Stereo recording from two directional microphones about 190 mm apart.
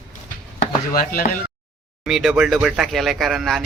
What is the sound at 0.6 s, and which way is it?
Chop, 50° left (ahead or behind).